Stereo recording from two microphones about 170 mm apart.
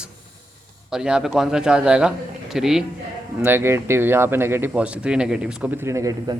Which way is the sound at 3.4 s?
15° right (ahead or behind).